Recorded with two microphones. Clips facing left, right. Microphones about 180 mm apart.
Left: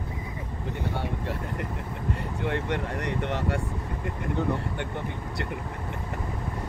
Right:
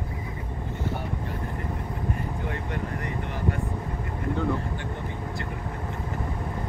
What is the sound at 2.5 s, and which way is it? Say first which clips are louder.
Speech: left 3 dB; 75° left (ahead or behind).